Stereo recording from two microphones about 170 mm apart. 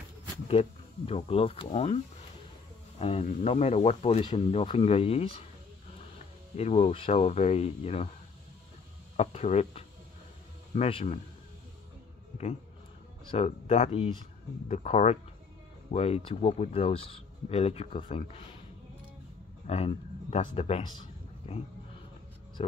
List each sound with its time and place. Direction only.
0.5 s speech: 35° left (ahead or behind)
3.0 s speech: 35° left (ahead or behind)
6.5 s speech: 40° left (ahead or behind)
9.1 s speech: 40° left (ahead or behind)
13.3 s speech: 35° left (ahead or behind)
19.6 s speech: 40° left (ahead or behind)